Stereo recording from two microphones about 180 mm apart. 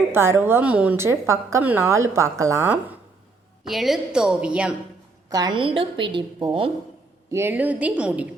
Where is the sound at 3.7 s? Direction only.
Centre (ahead or behind).